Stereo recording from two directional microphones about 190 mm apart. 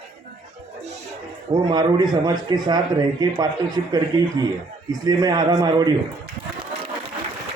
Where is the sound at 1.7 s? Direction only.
25° right (ahead or behind).